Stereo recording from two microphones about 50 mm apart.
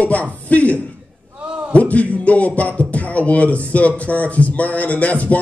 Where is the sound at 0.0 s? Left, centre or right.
Left.